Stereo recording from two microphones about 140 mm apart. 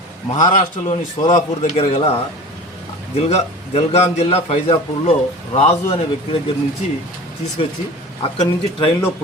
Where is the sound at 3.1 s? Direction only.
50° left (ahead or behind).